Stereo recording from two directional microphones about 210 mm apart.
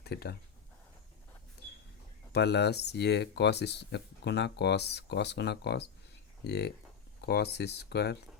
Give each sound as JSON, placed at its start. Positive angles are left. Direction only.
{"t": 0.0, "sound": "speech", "side_deg": 50}
{"t": 2.3, "sound": "speech", "side_deg": 50}